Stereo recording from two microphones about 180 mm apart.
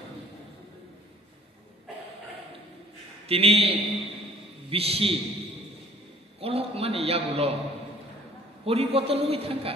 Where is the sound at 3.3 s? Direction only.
35° right (ahead or behind).